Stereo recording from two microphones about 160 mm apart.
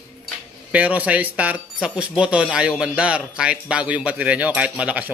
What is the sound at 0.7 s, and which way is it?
Speech, 10° right (ahead or behind).